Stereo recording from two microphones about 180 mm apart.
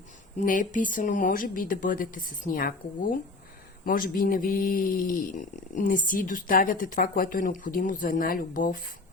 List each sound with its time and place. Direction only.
0.3 s speech: 45° left (ahead or behind)